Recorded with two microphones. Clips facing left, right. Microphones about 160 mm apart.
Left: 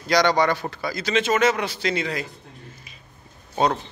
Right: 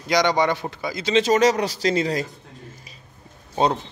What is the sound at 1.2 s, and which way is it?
Speech, 35° right (ahead or behind).